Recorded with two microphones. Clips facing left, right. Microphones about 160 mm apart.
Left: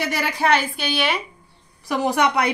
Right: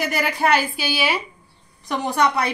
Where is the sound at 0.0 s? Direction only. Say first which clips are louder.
Right 1 dB; centre (ahead or behind).